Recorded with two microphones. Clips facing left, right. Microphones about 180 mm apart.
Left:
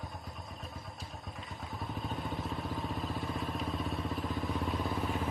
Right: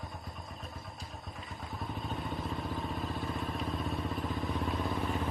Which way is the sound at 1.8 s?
Centre (ahead or behind).